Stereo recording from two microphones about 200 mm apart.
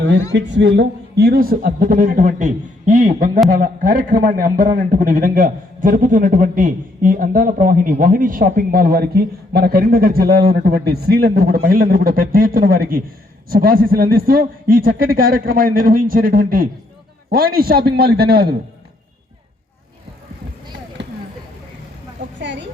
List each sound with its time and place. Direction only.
0.3 s a man's voice: 65° right (ahead or behind)
21.0 s vehicle: 60° right (ahead or behind)